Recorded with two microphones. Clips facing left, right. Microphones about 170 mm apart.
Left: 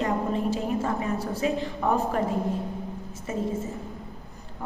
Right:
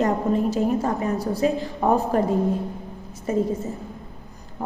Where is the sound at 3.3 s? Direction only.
35° right (ahead or behind).